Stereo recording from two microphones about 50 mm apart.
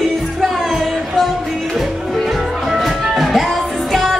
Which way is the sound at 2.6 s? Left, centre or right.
Centre.